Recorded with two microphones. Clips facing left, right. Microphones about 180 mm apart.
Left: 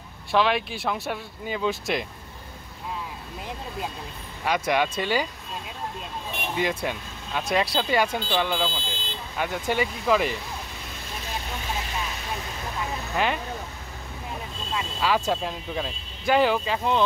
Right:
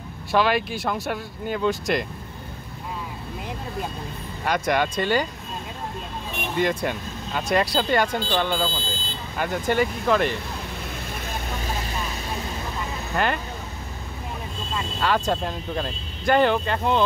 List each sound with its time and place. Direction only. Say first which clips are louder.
0.3 s speech: right 2 dB; centre (ahead or behind)
4.5 s speech: right 1 dB; 5° left (ahead or behind)
6.5 s speech: right 3 dB; 5° left (ahead or behind)
13.1 s speech: right 2 dB; centre (ahead or behind)
14.7 s speech: right 1 dB; 5° left (ahead or behind)